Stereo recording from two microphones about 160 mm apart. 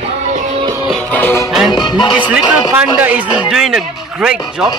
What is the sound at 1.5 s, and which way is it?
Speech, centre (ahead or behind).